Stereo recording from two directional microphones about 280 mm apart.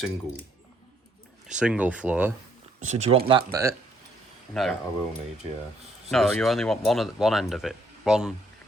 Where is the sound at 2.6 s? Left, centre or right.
Right.